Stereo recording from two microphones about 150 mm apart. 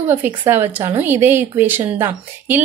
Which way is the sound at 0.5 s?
15° right (ahead or behind).